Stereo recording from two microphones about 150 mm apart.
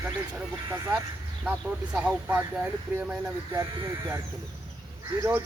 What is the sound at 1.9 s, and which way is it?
Speech, 10° right (ahead or behind).